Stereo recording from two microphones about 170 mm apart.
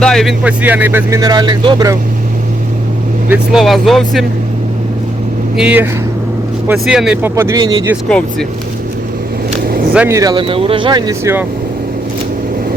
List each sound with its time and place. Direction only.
0.0 s speech: 5° left (ahead or behind)
0.4 s speech: 10° right (ahead or behind)
3.2 s speech: 5° right (ahead or behind)
5.5 s speech: 10° right (ahead or behind)
8.1 s speech: 5° left (ahead or behind)
9.6 s vehicle: 60° right (ahead or behind)
10.1 s speech: 20° right (ahead or behind)